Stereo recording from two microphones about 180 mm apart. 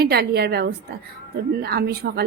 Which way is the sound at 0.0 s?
60° right (ahead or behind).